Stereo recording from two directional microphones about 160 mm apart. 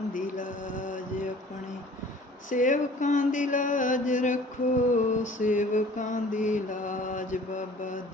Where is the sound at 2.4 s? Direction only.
55° left (ahead or behind).